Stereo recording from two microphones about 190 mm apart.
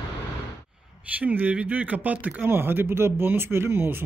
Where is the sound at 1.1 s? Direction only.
10° right (ahead or behind).